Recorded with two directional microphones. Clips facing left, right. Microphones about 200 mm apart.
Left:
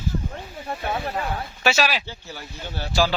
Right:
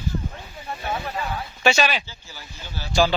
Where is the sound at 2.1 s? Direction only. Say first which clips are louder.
Left 6 dB; 60° left (ahead or behind).